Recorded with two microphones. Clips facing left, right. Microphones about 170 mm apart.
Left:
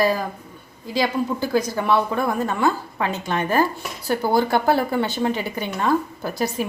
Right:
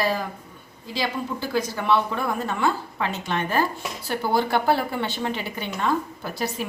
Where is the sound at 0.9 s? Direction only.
45° left (ahead or behind).